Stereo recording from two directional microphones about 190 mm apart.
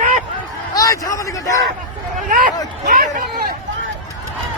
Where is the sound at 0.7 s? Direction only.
20° left (ahead or behind).